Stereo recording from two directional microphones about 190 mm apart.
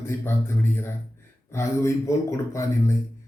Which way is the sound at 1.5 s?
15° left (ahead or behind).